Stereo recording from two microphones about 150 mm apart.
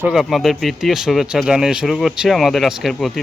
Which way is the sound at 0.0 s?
Centre (ahead or behind).